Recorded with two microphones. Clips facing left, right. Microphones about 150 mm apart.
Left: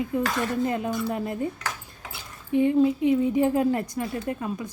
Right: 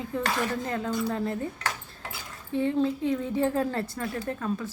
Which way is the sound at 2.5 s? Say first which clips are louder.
Left 5 dB; 15° left (ahead or behind).